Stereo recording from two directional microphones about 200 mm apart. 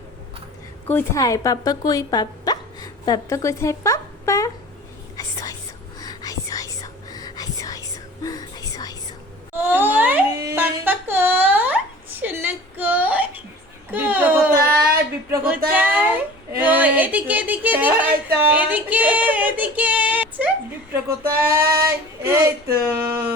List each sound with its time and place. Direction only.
0.9 s speech: 10° left (ahead or behind)
5.1 s whispering: 15° left (ahead or behind)
9.6 s a sound: 10° right (ahead or behind)
18.3 s child singing: 10° right (ahead or behind)
21.5 s child singing: 15° right (ahead or behind)
23.0 s a sound: 15° right (ahead or behind)